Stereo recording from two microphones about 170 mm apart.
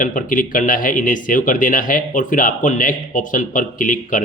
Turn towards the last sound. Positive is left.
turn(degrees=50)  # may be behind; listen again after turning